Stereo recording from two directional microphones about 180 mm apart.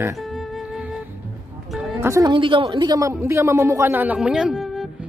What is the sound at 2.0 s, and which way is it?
Speech, 20° right (ahead or behind).